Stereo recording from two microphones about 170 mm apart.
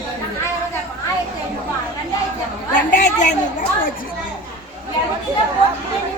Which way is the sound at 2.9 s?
50° left (ahead or behind).